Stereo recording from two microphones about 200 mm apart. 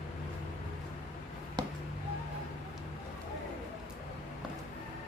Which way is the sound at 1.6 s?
20° right (ahead or behind).